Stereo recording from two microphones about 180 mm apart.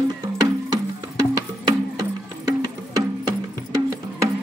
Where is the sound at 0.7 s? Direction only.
20° right (ahead or behind).